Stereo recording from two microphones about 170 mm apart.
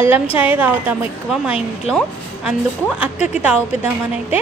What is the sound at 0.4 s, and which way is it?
A woman's voice, 10° right (ahead or behind).